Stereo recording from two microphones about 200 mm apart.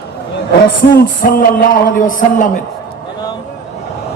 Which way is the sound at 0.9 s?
45° left (ahead or behind).